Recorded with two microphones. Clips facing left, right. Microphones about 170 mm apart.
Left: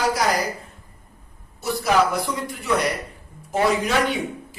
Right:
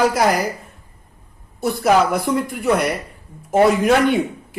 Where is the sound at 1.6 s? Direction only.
55° right (ahead or behind).